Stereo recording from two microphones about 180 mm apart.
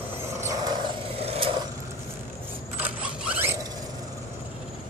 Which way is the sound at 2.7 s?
10° right (ahead or behind).